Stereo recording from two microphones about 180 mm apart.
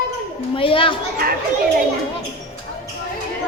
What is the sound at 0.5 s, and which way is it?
Speech, 30° left (ahead or behind).